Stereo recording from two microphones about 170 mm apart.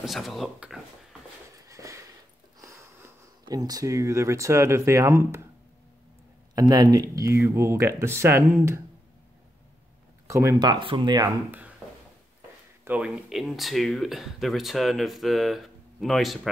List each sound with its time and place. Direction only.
0.0 s speech: centre (ahead or behind)
1.7 s a sound: 20° right (ahead or behind)
2.6 s speech: 15° right (ahead or behind)
6.5 s speech: 20° right (ahead or behind)
10.2 s speech: 15° right (ahead or behind)
11.8 s a sound: 5° right (ahead or behind)
12.8 s speech: 5° right (ahead or behind)